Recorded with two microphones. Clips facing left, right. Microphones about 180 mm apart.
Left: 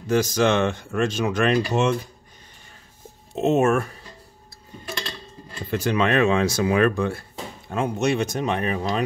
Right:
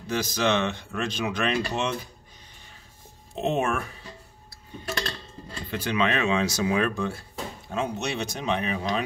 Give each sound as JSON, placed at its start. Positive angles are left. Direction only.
{"t": 0.0, "sound": "speech", "side_deg": 50}
{"t": 3.3, "sound": "speech", "side_deg": 45}
{"t": 5.7, "sound": "speech", "side_deg": 45}